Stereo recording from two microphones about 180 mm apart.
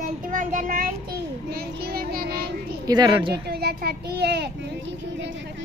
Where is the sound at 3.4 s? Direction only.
60° right (ahead or behind).